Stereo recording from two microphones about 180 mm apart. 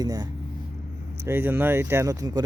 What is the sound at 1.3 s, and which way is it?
Speech, 15° right (ahead or behind).